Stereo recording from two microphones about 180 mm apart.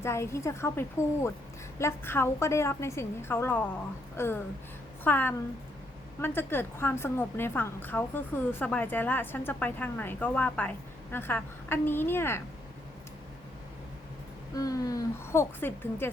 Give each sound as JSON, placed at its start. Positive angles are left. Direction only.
{"t": 0.0, "sound": "a woman's voice", "side_deg": 15}
{"t": 14.5, "sound": "a woman's voice", "side_deg": 20}